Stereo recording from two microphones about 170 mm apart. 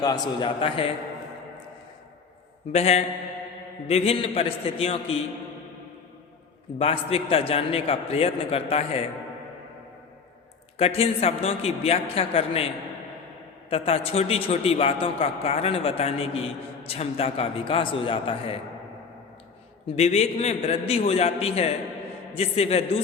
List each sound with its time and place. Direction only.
0.0 s a man's voice: 25° left (ahead or behind)
2.7 s a man's voice: 40° left (ahead or behind)
6.7 s a man's voice: 35° left (ahead or behind)
10.8 s a man's voice: 35° left (ahead or behind)
20.0 s a man's voice: 40° left (ahead or behind)